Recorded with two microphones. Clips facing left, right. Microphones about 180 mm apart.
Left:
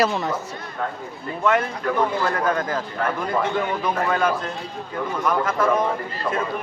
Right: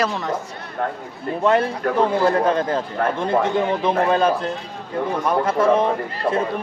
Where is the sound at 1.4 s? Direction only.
30° right (ahead or behind).